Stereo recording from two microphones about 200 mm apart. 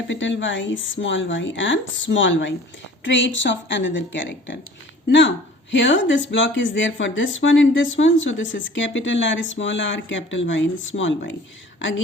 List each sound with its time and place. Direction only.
0.1 s a woman's voice: 70° left (ahead or behind)